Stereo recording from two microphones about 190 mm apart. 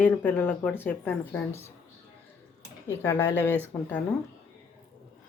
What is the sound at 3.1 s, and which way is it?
Speech, 15° left (ahead or behind).